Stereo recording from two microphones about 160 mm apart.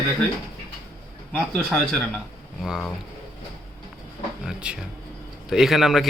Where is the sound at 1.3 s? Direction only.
5° left (ahead or behind).